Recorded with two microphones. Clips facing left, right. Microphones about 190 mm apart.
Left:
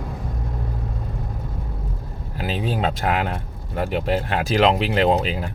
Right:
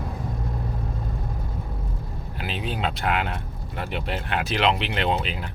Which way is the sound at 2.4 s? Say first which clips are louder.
Left 6 dB; 40° left (ahead or behind).